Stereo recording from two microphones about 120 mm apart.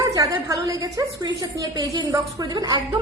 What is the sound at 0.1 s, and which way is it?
A woman's voice, 30° right (ahead or behind).